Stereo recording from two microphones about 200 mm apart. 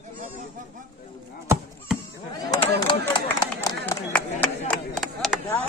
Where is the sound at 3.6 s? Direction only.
15° left (ahead or behind); by 5.4 s centre (ahead or behind).